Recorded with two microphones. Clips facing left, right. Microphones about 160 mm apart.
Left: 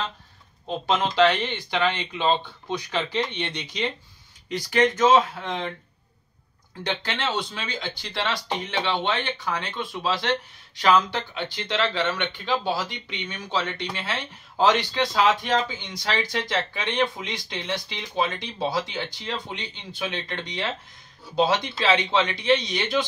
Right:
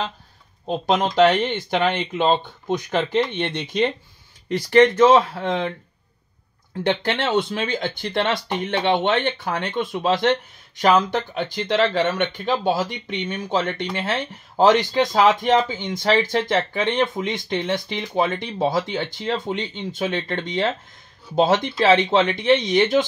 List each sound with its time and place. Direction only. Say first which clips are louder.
0.7 s speech: right 4 dB; 40° right (ahead or behind); by 5.7 s 55° right (ahead or behind)
6.8 s speech: right 7 dB; 50° right (ahead or behind)